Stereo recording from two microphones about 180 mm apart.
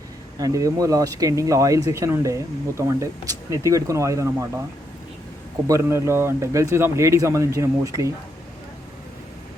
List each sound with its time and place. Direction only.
0.3 s speech: 20° right (ahead or behind)
5.6 s speech: 15° right (ahead or behind)